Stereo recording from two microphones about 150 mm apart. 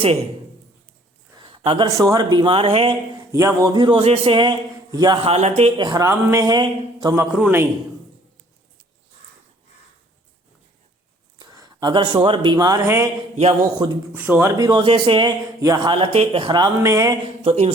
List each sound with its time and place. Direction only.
1.4 s a sound: 35° right (ahead or behind)
1.9 s a man's voice: 20° right (ahead or behind); by 2.9 s 40° right (ahead or behind)
3.3 s a man's voice: 20° right (ahead or behind)
5.2 s speech: 45° right (ahead or behind)
5.7 s speech: 25° right (ahead or behind)
7.3 s speech: 10° right (ahead or behind)
11.3 s speech: 25° right (ahead or behind)
13.3 s speech: 45° right (ahead or behind)
14.1 s speech: 10° right (ahead or behind)
14.7 s a man's voice: 35° right (ahead or behind)
15.6 s speech: 25° right (ahead or behind)
16.0 s speech: 40° right (ahead or behind); by 17.2 s 20° right (ahead or behind)
17.4 s a man's voice: 45° right (ahead or behind)